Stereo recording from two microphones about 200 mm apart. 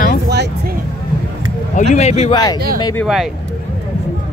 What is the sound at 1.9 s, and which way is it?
Speech, 35° left (ahead or behind).